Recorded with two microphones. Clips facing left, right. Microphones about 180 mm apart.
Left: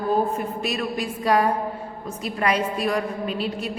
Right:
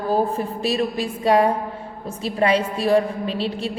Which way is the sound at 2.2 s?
30° right (ahead or behind).